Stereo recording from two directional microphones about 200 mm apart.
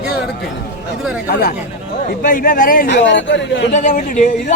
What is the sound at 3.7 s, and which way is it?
Speech, 40° left (ahead or behind).